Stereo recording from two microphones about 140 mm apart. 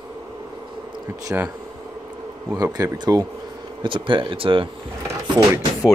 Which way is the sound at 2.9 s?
30° right (ahead or behind).